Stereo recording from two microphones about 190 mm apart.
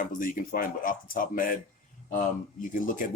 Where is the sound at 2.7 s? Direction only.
45° left (ahead or behind).